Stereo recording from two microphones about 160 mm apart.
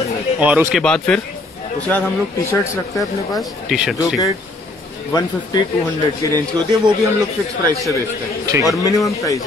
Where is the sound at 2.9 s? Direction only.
Centre (ahead or behind).